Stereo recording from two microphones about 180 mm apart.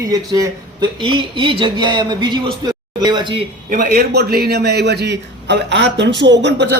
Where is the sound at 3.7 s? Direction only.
50° right (ahead or behind).